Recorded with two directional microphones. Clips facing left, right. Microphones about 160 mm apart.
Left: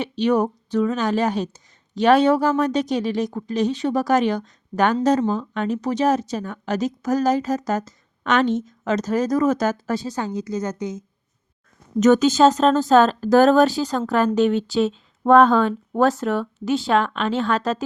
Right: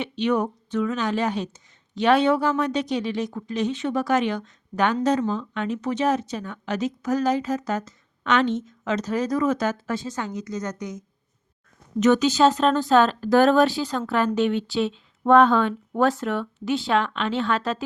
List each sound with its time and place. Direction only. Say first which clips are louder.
0.0 s speech: left 4 dB; 40° left (ahead or behind)
11.9 s speech: left 3 dB; 45° left (ahead or behind)